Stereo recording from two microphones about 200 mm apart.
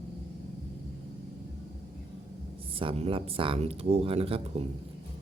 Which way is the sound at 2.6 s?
25° right (ahead or behind).